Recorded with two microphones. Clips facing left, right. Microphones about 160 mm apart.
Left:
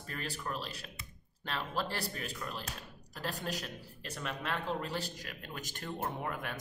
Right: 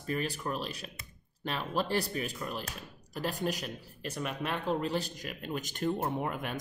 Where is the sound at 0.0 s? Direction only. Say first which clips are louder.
Right 7 dB; 15° right (ahead or behind).